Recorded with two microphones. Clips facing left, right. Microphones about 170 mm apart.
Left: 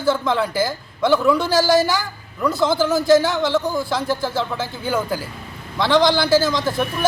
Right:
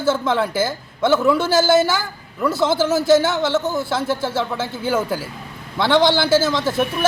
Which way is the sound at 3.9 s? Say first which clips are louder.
Right 1 dB; 5° right (ahead or behind).